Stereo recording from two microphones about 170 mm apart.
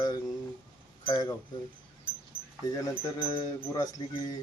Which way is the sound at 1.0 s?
20° left (ahead or behind).